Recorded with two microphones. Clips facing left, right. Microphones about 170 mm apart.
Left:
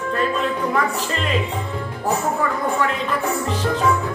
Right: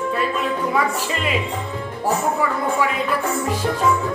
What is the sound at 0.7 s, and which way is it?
Speech, 5° right (ahead or behind).